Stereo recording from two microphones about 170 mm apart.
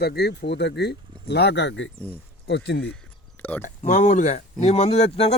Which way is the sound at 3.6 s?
45° left (ahead or behind).